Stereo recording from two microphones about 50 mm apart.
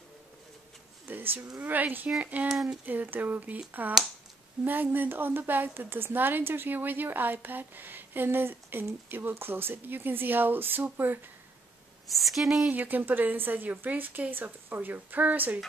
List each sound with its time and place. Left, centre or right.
1.0 s a sound: right
1.6 s a woman's voice: right
2.4 s speech: centre
2.8 s a woman's voice: right
12.1 s a woman's voice: centre
12.6 s a woman's voice: right